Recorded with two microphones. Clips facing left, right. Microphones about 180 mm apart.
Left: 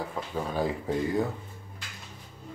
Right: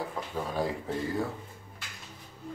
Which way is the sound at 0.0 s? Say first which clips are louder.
Left 2 dB; centre (ahead or behind).